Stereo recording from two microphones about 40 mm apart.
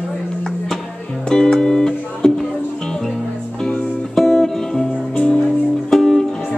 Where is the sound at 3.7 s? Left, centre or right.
Centre.